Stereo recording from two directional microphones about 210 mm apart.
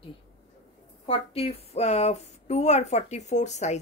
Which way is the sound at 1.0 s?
25° left (ahead or behind).